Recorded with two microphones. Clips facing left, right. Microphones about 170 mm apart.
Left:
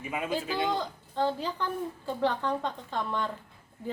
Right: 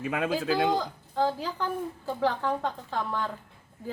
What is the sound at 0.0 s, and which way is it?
Speech, 90° right.